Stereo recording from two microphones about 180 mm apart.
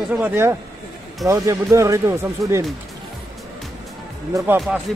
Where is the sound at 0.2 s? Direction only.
10° right (ahead or behind).